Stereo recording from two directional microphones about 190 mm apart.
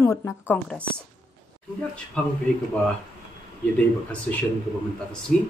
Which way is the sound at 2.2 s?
5° left (ahead or behind).